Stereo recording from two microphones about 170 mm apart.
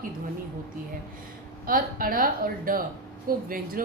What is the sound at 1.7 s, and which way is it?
A woman's voice, 60° right (ahead or behind).